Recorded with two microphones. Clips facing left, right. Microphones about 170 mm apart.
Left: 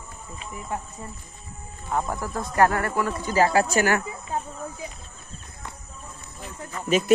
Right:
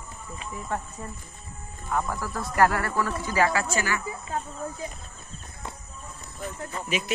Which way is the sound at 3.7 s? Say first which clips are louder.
Left 6 dB; 65° left (ahead or behind).